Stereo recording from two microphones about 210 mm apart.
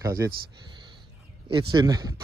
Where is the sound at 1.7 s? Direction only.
20° right (ahead or behind).